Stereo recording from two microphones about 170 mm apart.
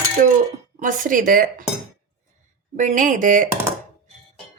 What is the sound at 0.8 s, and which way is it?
Speech, 55° right (ahead or behind).